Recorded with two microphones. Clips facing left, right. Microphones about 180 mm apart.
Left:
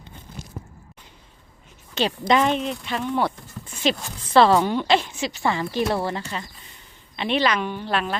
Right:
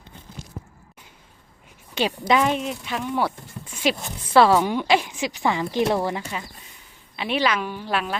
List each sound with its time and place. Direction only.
2.0 s speech: 10° right (ahead or behind)